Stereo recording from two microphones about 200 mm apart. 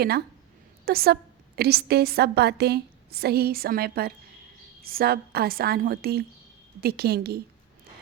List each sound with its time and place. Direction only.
0.9 s a woman's voice: 50° right (ahead or behind)